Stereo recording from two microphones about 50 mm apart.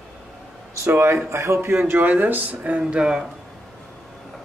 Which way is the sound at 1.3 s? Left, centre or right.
Right.